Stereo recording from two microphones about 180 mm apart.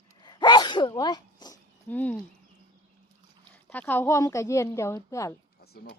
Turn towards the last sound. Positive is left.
turn(degrees=60)  # may be behind; listen again after turning